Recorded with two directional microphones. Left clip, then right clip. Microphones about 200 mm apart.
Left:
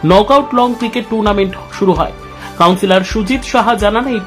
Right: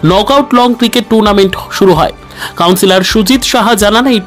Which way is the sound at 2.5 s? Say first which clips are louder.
Right 2 dB; 35° right (ahead or behind).